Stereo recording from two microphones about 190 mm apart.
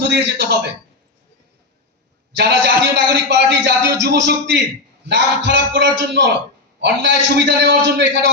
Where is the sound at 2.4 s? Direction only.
65° right (ahead or behind).